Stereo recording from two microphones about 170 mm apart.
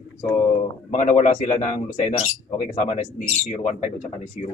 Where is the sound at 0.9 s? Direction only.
45° left (ahead or behind).